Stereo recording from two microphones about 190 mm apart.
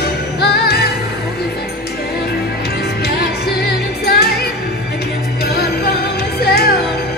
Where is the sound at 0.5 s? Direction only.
55° left (ahead or behind).